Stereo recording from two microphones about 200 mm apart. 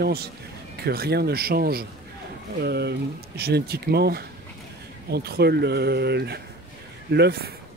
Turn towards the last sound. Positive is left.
turn(degrees=-55)  # may be behind; listen again after turning